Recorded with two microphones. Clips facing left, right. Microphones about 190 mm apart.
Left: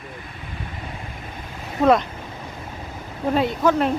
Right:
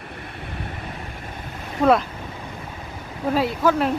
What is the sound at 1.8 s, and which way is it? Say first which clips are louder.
Speech: left 1 dB; 5° right (ahead or behind).